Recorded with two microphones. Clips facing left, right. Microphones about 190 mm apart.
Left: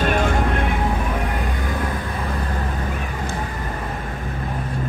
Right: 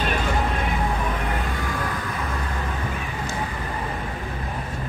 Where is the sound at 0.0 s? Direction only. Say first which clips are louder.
Left 4 dB; 55° left (ahead or behind).